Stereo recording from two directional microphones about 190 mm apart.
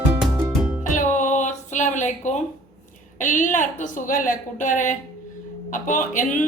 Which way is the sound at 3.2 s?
45° left (ahead or behind).